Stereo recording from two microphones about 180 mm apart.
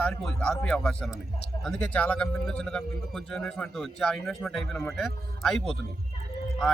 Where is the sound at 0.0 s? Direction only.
5° left (ahead or behind).